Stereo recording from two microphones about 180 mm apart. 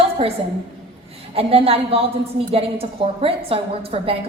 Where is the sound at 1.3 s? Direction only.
30° right (ahead or behind).